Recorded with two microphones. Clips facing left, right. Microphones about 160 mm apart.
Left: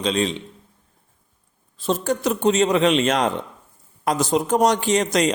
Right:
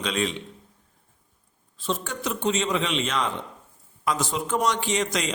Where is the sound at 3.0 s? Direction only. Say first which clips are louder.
Left 7 dB; 85° left.